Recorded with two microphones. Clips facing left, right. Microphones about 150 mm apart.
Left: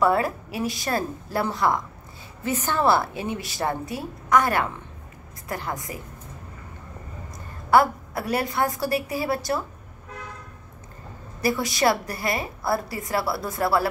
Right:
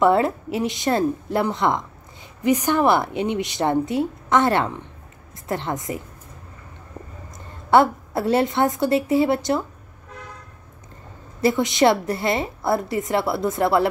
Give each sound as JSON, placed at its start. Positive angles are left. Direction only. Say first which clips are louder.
{"t": 0.0, "sound": "a woman's voice", "louder": "right 4 dB", "side_deg": -25}
{"t": 7.7, "sound": "a woman's voice", "louder": "right 3 dB", "side_deg": -25}
{"t": 11.4, "sound": "a woman's voice", "louder": "right 5 dB", "side_deg": -20}